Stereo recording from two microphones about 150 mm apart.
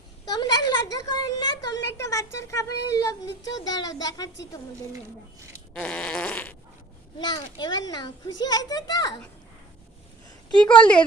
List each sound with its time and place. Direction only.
0.3 s a woman's voice: 25° left (ahead or behind)
5.7 s fart: 5° left (ahead or behind)
7.2 s a woman's voice: 30° left (ahead or behind)
10.6 s fart: 5° left (ahead or behind)